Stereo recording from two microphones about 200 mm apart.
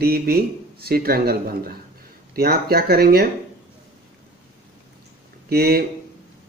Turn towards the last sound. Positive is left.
turn(degrees=-50)  # may be behind; listen again after turning